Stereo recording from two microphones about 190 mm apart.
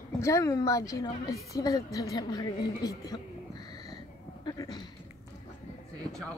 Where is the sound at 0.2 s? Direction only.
15° left (ahead or behind).